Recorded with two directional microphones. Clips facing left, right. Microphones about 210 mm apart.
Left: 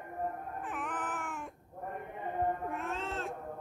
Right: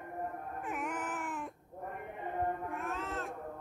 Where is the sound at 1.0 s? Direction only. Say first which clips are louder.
Even; 40° right (ahead or behind).